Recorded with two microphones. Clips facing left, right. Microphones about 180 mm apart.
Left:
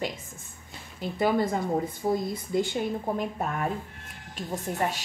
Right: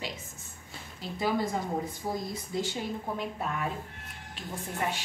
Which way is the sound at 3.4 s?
50° left (ahead or behind).